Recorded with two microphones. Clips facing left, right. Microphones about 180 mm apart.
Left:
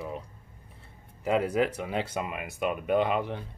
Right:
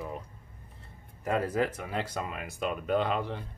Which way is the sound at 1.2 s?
20° left (ahead or behind).